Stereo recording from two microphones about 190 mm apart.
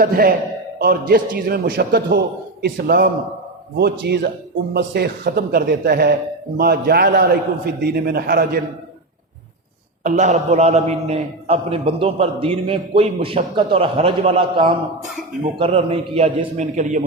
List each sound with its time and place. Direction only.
0.0 s a man's voice: 50° right (ahead or behind)
10.0 s a man's voice: 40° right (ahead or behind)